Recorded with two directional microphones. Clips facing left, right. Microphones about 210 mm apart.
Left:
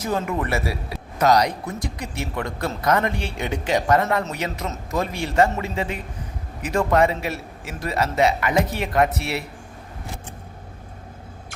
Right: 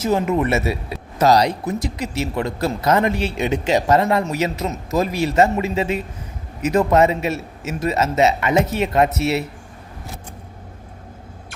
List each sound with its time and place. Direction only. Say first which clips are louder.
0.0 s a man's voice: right 6 dB; 25° right (ahead or behind)